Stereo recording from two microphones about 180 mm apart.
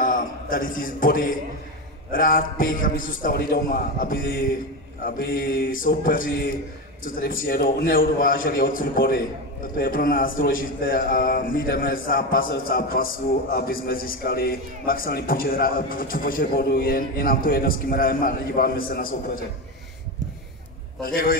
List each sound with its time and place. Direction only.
0.0 s a man's voice: 50° left (ahead or behind)
21.0 s a man's voice: 55° left (ahead or behind)